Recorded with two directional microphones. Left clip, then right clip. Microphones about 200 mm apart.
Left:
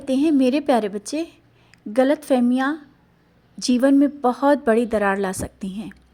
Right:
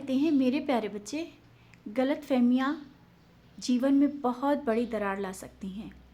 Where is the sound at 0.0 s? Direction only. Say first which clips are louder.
Left 8 dB; 35° left (ahead or behind).